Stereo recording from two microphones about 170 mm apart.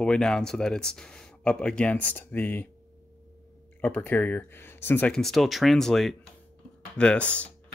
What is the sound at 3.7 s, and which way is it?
Speech, 10° left (ahead or behind).